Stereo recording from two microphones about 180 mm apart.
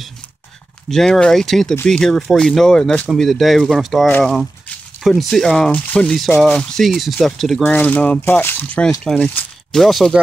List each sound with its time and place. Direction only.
0.8 s speech: centre (ahead or behind)